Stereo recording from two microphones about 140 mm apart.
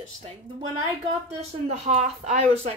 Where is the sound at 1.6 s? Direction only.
55° right (ahead or behind).